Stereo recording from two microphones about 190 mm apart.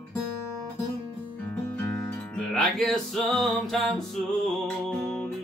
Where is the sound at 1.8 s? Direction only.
5° left (ahead or behind).